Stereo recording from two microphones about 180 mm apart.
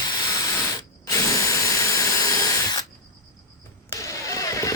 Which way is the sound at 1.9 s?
20° left (ahead or behind).